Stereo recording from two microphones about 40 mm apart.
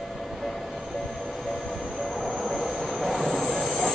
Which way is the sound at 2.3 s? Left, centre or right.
Centre.